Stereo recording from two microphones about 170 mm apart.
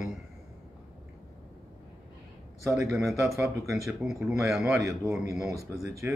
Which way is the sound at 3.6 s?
Centre (ahead or behind).